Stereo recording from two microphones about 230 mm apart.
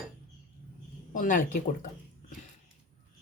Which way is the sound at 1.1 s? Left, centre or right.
Left.